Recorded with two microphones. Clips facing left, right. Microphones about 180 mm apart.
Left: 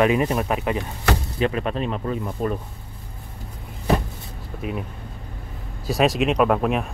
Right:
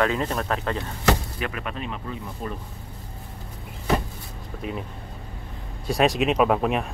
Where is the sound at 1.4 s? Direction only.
30° left (ahead or behind).